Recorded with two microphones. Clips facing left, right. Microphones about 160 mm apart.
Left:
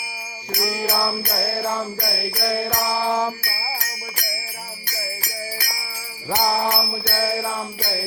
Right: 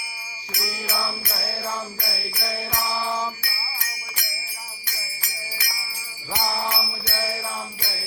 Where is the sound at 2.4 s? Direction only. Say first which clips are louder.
Left 8 dB; 70° left (ahead or behind).